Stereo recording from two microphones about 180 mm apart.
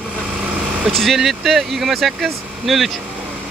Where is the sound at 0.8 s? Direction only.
Centre (ahead or behind).